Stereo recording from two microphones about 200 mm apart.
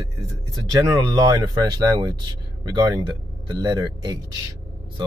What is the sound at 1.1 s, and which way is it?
Speech, 20° right (ahead or behind).